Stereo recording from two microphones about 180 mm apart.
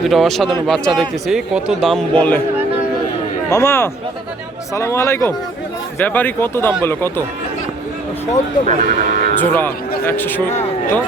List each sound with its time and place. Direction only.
0.0 s a man's voice: centre (ahead or behind)
3.5 s speech: 15° left (ahead or behind)
8.6 s speech: 50° right (ahead or behind)
9.4 s speech: 10° left (ahead or behind)